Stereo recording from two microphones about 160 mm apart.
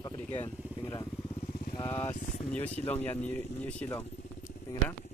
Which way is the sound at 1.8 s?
15° left (ahead or behind).